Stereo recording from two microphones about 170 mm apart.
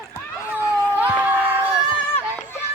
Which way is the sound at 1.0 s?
10° right (ahead or behind).